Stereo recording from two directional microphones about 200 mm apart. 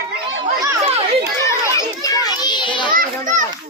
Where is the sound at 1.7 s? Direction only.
15° left (ahead or behind).